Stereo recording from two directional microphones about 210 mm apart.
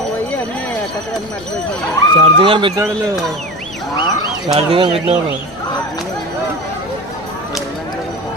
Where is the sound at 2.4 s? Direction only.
25° right (ahead or behind).